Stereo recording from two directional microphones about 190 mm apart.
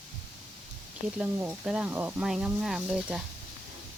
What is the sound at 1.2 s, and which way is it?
Speech, 5° right (ahead or behind).